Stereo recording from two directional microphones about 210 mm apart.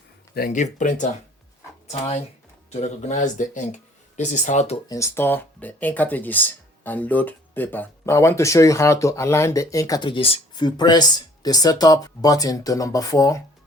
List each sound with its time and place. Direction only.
0.3 s speech: 40° left (ahead or behind)
4.9 s speech: 15° left (ahead or behind)